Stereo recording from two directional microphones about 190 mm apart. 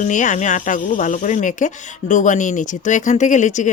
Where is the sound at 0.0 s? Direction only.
40° left (ahead or behind).